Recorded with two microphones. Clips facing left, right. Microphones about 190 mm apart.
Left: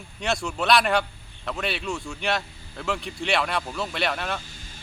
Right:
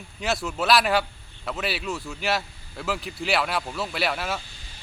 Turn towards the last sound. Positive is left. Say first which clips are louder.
# even
turn(degrees=-5)  # may be behind; listen again after turning